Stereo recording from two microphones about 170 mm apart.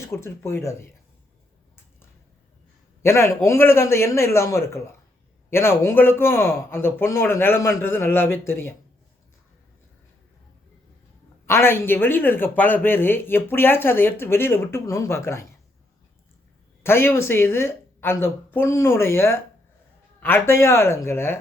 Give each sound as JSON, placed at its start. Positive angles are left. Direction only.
{"t": 0.0, "sound": "a man's voice", "side_deg": 15}
{"t": 3.0, "sound": "a man's voice", "side_deg": 15}
{"t": 11.4, "sound": "a man's voice", "side_deg": 15}
{"t": 16.8, "sound": "a man's voice", "side_deg": 15}